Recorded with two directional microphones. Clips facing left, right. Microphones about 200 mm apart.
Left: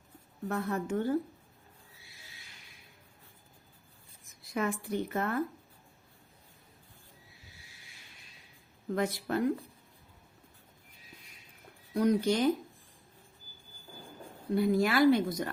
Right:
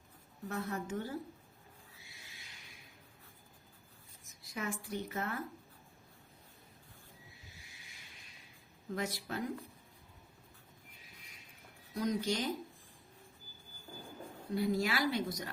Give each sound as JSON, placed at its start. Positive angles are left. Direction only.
{"t": 0.4, "sound": "speech", "side_deg": 55}
{"t": 4.5, "sound": "speech", "side_deg": 55}
{"t": 9.0, "sound": "speech", "side_deg": 55}
{"t": 11.9, "sound": "speech", "side_deg": 55}
{"t": 14.5, "sound": "speech", "side_deg": 55}